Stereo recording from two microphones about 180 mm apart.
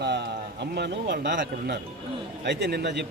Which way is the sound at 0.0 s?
70° right (ahead or behind).